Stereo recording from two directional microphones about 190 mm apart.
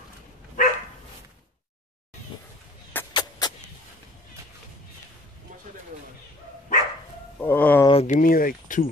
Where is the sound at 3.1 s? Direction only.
20° left (ahead or behind).